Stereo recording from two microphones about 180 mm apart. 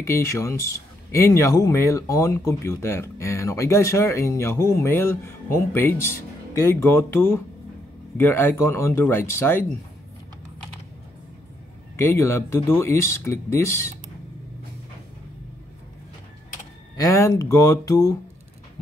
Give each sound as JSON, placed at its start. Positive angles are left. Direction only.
{"t": 0.0, "sound": "speech", "side_deg": 15}
{"t": 12.0, "sound": "speech", "side_deg": 15}
{"t": 16.9, "sound": "speech", "side_deg": 15}